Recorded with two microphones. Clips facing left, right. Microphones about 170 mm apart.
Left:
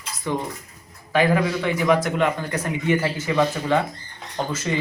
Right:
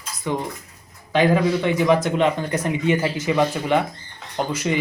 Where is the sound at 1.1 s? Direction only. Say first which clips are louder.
Right 2 dB; 20° right (ahead or behind).